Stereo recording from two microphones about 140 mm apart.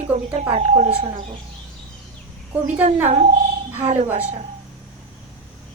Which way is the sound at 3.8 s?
50° right (ahead or behind).